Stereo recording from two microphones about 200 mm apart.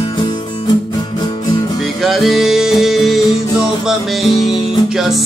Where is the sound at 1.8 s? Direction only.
Centre (ahead or behind).